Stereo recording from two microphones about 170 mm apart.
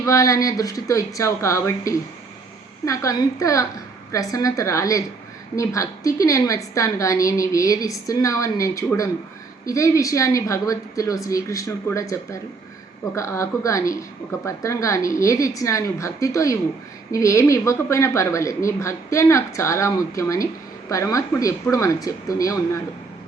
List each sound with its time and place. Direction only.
0.0 s a woman's voice: 20° left (ahead or behind)